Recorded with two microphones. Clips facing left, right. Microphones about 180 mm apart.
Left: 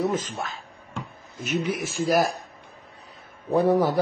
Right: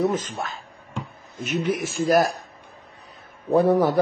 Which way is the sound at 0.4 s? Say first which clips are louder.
Right 2 dB; centre (ahead or behind).